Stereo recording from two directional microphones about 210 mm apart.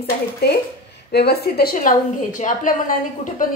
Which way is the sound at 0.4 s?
50° left (ahead or behind).